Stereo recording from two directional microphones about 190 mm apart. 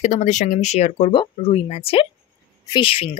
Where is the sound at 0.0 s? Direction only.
40° left (ahead or behind).